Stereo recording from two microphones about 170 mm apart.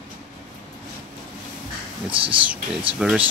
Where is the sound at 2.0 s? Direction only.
30° right (ahead or behind).